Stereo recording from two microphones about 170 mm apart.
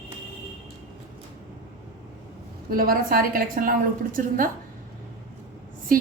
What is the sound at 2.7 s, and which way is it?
A woman's voice, 60° right (ahead or behind).